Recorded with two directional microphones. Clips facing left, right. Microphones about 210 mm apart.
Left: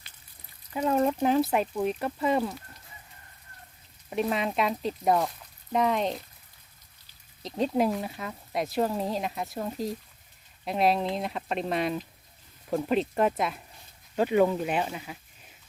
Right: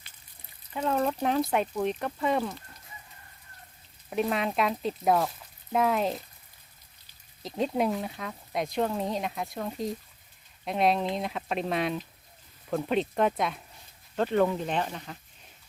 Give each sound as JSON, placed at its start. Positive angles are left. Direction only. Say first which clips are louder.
{"t": 0.7, "sound": "speech", "louder": "left 3 dB", "side_deg": 10}
{"t": 4.1, "sound": "speech", "louder": "even", "side_deg": 0}
{"t": 7.4, "sound": "speech", "louder": "left 2 dB", "side_deg": 0}